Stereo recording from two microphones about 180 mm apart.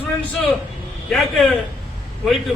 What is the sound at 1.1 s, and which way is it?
Speech, centre (ahead or behind).